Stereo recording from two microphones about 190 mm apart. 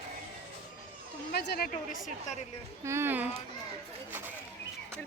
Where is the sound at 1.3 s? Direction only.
60° left (ahead or behind).